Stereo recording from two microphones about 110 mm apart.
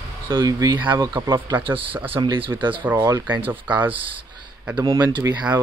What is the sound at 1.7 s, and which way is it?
Speech, 50° right (ahead or behind).